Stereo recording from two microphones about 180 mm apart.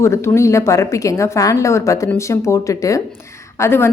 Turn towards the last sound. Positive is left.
turn(degrees=15)  # may be behind; listen again after turning